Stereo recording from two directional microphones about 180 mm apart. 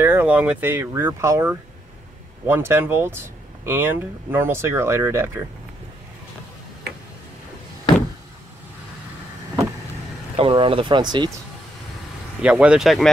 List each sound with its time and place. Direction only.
0.0 s speech: 10° right (ahead or behind)
10.3 s speech: 30° right (ahead or behind)
12.4 s speech: 5° right (ahead or behind)